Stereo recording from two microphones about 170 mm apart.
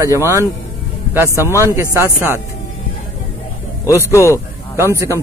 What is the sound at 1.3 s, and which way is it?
Speech, 15° left (ahead or behind).